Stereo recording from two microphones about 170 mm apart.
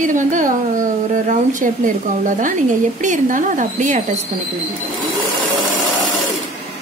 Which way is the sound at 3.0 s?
50° right (ahead or behind).